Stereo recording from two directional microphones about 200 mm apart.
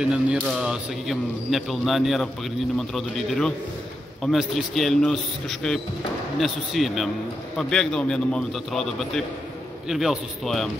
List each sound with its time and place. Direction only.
0.0 s speech: 5° right (ahead or behind)